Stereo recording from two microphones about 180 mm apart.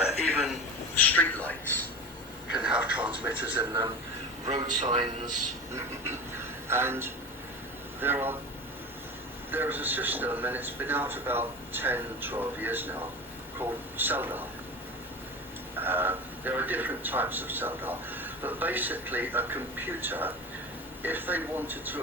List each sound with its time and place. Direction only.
0.9 s a sound: 10° left (ahead or behind)
2.5 s television: 5° right (ahead or behind)
4.4 s a man's voice: 40° right (ahead or behind)
5.7 s a man's voice: 15° right (ahead or behind)
9.5 s a man's voice: 10° right (ahead or behind)
15.8 s a man's voice: 10° right (ahead or behind)